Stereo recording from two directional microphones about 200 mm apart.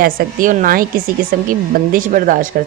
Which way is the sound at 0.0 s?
40° right (ahead or behind).